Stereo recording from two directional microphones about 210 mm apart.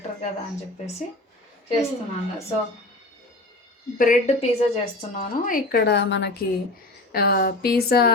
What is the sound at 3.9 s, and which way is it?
A woman's voice, 40° left (ahead or behind).